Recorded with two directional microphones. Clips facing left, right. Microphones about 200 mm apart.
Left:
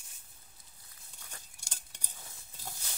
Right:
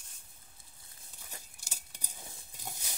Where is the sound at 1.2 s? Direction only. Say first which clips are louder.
Right 2 dB; 10° right (ahead or behind).